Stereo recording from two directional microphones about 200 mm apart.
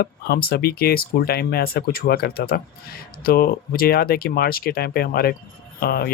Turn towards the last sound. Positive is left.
turn(degrees=50)  # may be behind; listen again after turning